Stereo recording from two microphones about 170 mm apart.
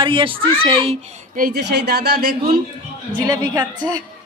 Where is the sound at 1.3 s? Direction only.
65° right (ahead or behind).